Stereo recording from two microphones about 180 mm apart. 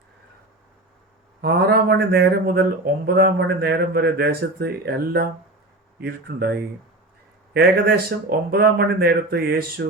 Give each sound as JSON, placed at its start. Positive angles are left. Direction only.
{"t": 1.4, "sound": "speech", "side_deg": -60}